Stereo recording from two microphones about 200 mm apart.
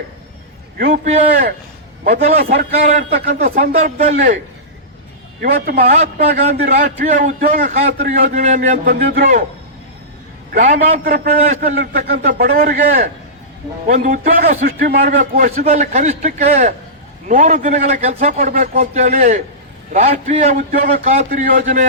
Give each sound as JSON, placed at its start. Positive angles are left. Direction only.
{"t": 0.8, "sound": "a man's voice", "side_deg": -40}
{"t": 5.4, "sound": "a man's voice", "side_deg": -50}
{"t": 10.7, "sound": "a man's voice", "side_deg": -50}
{"t": 12.2, "sound": "a man's voice", "side_deg": -40}
{"t": 15.5, "sound": "a man's voice", "side_deg": -35}
{"t": 20.9, "sound": "a man's voice", "side_deg": -30}